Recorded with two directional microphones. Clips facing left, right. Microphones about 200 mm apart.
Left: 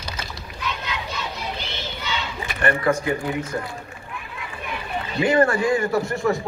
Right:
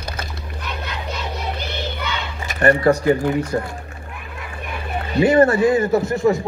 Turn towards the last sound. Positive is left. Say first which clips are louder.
# right 5 dB
turn(degrees=-20)  # may be behind; listen again after turning